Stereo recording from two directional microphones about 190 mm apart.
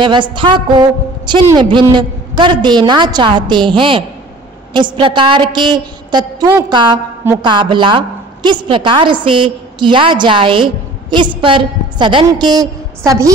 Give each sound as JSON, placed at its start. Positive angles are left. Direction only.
{"t": 0.0, "sound": "a woman's voice", "side_deg": -25}